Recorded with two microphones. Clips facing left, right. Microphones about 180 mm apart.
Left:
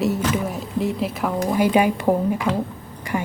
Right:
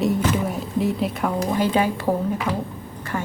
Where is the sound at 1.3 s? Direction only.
10° left (ahead or behind).